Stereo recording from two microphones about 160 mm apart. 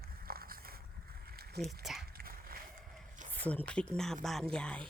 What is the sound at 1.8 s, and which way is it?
Speech, centre (ahead or behind).